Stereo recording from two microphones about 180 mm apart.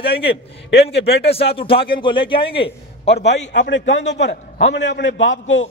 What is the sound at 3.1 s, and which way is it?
A man's voice, 75° left (ahead or behind).